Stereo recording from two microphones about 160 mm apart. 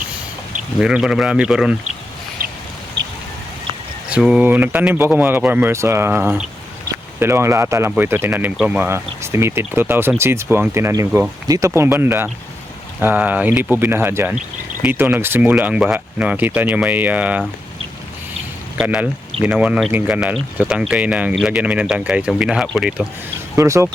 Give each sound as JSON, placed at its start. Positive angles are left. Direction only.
{"t": 0.8, "sound": "a man's voice", "side_deg": -5}
{"t": 2.4, "sound": "duck", "side_deg": -65}
{"t": 3.0, "sound": "a sound", "side_deg": -90}
{"t": 4.1, "sound": "speech", "side_deg": -5}
{"t": 18.8, "sound": "speech", "side_deg": -5}
{"t": 23.6, "sound": "speech", "side_deg": -20}